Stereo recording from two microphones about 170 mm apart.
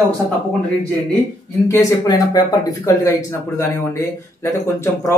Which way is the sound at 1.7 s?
20° left (ahead or behind).